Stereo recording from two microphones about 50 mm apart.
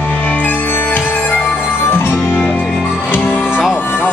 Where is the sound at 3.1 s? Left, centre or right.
Left.